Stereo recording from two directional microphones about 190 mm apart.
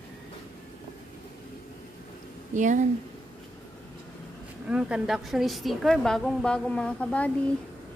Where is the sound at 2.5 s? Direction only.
40° right (ahead or behind).